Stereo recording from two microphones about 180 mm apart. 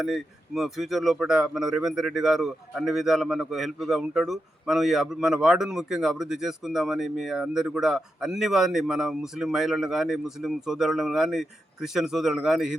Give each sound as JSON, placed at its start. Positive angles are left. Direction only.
{"t": 0.0, "sound": "speech", "side_deg": 0}